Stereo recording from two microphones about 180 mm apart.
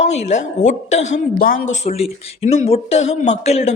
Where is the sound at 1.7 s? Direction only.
35° left (ahead or behind).